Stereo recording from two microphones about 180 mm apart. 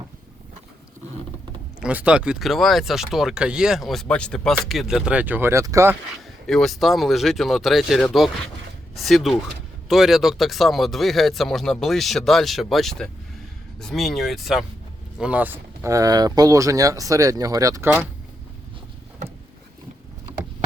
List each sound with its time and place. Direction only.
1.8 s speech: 5° right (ahead or behind)
6.5 s speech: centre (ahead or behind); by 18.0 s 15° right (ahead or behind)